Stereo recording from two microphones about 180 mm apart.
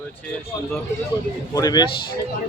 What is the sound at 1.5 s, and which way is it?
Speech, 20° left (ahead or behind).